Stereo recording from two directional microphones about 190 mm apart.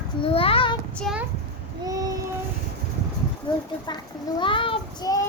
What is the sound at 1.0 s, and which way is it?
Speech, centre (ahead or behind).